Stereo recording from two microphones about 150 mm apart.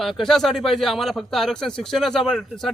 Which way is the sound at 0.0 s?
Centre (ahead or behind).